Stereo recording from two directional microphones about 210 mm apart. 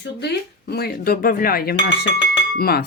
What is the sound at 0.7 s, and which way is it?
Speech, 45° left (ahead or behind).